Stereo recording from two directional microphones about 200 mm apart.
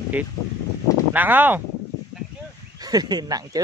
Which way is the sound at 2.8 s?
20° right (ahead or behind).